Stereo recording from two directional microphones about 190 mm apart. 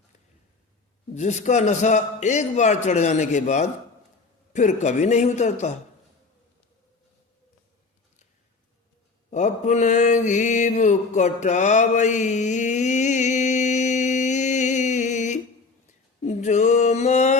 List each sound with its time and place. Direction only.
1.1 s a man's voice: 35° left (ahead or behind)
9.3 s mantra: 40° left (ahead or behind)
16.2 s a man's voice: 40° left (ahead or behind)